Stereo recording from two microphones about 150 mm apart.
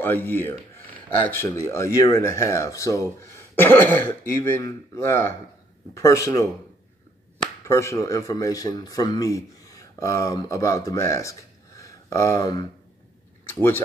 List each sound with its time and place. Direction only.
0.0 s speech: 15° left (ahead or behind)
7.6 s speech: 20° left (ahead or behind)
13.6 s speech: 15° left (ahead or behind)